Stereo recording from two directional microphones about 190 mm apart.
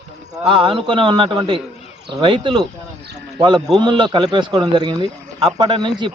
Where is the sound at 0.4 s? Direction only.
25° right (ahead or behind).